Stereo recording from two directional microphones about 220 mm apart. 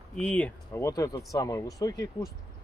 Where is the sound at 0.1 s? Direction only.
5° left (ahead or behind).